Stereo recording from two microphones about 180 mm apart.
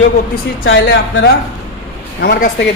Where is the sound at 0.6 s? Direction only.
80° left.